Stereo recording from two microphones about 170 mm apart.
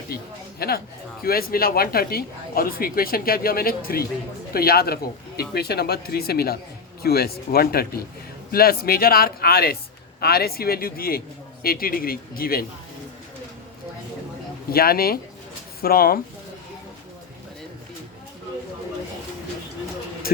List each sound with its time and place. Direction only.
0.1 s speech: 65° left (ahead or behind)
14.7 s speech: 65° left (ahead or behind)